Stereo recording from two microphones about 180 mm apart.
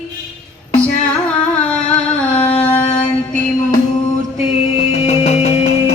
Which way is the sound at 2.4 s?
10° left (ahead or behind).